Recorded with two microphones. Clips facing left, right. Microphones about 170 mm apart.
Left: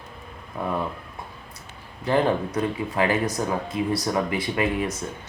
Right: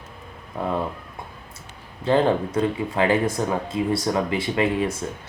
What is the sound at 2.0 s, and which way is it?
Speech, 25° right (ahead or behind).